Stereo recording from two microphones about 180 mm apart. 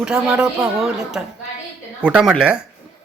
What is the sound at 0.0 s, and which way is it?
Speech, 5° right (ahead or behind).